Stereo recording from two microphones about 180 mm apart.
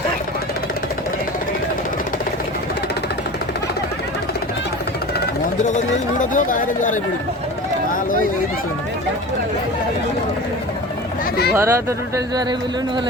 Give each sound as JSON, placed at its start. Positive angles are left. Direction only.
{"t": 5.6, "sound": "speech", "side_deg": 45}
{"t": 11.5, "sound": "speech", "side_deg": -15}